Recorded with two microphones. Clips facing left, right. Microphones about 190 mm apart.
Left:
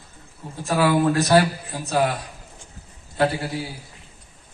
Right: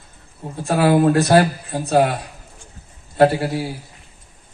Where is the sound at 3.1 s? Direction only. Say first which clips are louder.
Right 7 dB; 55° right (ahead or behind).